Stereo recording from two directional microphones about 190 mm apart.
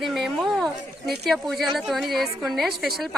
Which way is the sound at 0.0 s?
Centre (ahead or behind).